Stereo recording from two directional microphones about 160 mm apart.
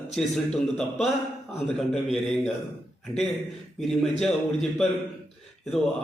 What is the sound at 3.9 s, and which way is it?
A man's voice, centre (ahead or behind).